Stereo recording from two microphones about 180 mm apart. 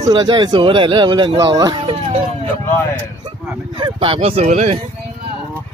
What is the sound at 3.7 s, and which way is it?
Speech, 30° right (ahead or behind).